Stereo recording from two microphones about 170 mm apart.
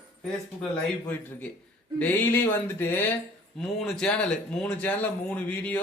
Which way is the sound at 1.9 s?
10° left (ahead or behind).